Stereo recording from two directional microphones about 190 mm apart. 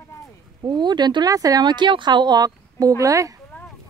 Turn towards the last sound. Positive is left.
turn(degrees=-15)  # may be behind; listen again after turning